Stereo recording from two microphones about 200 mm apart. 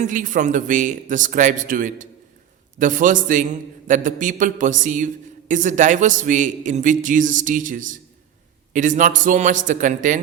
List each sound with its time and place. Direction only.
0.0 s speech: 40° right (ahead or behind)